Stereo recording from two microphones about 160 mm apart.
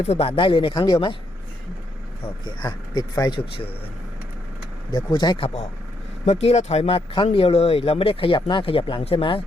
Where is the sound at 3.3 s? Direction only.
35° left (ahead or behind).